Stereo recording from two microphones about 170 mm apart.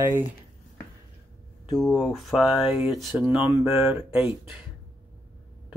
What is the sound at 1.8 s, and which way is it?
Speech, 5° left (ahead or behind).